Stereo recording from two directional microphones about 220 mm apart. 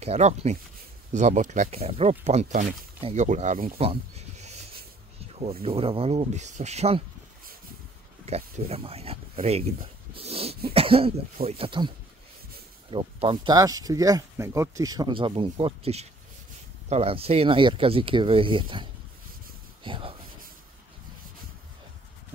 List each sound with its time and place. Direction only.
0.0 s speech: 30° right (ahead or behind)
3.7 s speech: 25° right (ahead or behind)
8.3 s speech: 30° right (ahead or behind)
10.7 s cough: 25° right (ahead or behind)
11.3 s speech: 25° right (ahead or behind)
12.9 s speech: 25° right (ahead or behind)